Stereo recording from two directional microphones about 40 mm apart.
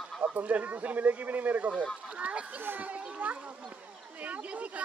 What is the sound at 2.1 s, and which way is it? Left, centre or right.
Speech, right.